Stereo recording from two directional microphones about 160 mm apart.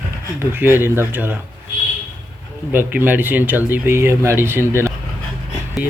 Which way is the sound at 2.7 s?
10° right (ahead or behind).